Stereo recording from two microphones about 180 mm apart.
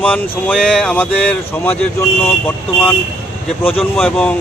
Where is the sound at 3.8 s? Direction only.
Centre (ahead or behind).